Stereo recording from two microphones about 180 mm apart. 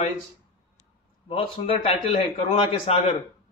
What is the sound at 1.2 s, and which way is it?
A man's voice, 30° left (ahead or behind).